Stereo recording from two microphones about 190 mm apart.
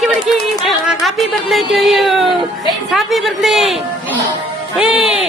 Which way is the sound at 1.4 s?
Centre (ahead or behind).